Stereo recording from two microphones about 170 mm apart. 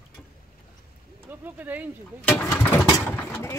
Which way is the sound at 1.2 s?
10° right (ahead or behind).